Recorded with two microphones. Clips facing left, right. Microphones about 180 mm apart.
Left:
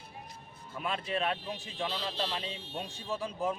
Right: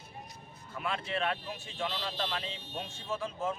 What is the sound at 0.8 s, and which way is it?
Speech, 20° left (ahead or behind).